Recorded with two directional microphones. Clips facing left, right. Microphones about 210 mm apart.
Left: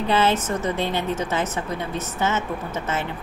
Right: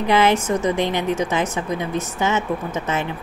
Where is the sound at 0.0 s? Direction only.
15° right (ahead or behind).